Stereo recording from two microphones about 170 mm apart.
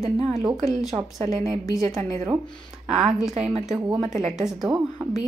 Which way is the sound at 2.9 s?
5° right (ahead or behind).